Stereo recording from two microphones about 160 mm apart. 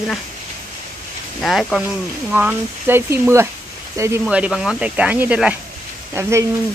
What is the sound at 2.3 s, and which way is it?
Speech, 10° right (ahead or behind).